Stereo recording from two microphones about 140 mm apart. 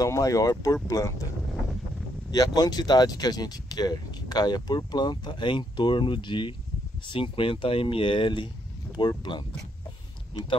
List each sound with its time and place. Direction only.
0.0 s speech: 25° left (ahead or behind)
2.3 s speech: 30° left (ahead or behind)